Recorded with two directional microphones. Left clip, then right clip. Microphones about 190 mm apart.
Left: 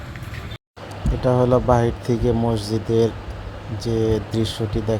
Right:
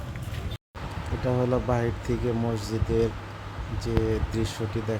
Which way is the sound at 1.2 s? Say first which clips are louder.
Left 9 dB; 20° left (ahead or behind).